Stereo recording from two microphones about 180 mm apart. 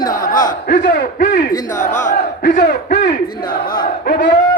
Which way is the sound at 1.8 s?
45° left (ahead or behind).